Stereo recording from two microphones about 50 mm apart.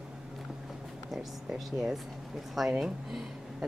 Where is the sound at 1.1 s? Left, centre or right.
Centre.